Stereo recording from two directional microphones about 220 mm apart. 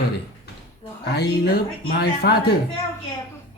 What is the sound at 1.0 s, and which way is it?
Speech, 50° left (ahead or behind).